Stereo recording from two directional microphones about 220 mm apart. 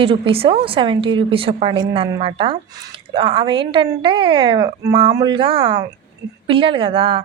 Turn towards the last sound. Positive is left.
turn(degrees=-25)  # may be behind; listen again after turning